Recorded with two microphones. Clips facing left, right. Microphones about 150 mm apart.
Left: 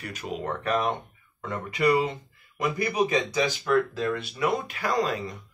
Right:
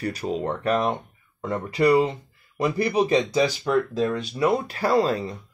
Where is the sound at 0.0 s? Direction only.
35° right (ahead or behind).